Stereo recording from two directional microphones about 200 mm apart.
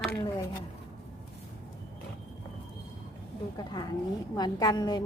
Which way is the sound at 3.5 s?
20° left (ahead or behind).